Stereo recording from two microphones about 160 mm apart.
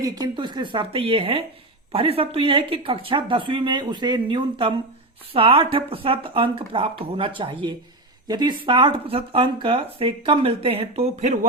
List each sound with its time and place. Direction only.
0.0 s speech: 20° right (ahead or behind); by 11.3 s 45° right (ahead or behind)